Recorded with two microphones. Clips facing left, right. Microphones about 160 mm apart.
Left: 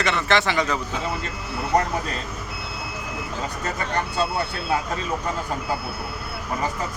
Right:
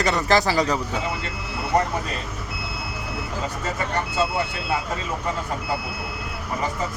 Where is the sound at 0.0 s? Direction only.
40° right (ahead or behind).